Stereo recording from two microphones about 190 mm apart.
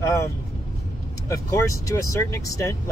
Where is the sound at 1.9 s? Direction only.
15° left (ahead or behind).